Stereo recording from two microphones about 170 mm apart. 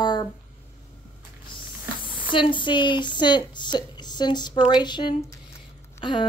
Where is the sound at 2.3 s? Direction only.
30° left (ahead or behind).